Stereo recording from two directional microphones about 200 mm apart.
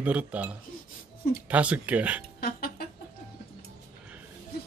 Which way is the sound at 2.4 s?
50° left (ahead or behind).